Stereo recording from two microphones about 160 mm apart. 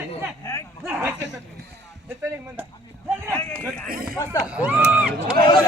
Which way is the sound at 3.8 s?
65° right (ahead or behind).